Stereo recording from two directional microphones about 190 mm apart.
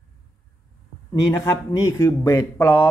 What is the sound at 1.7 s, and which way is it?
A man's voice, 15° left (ahead or behind).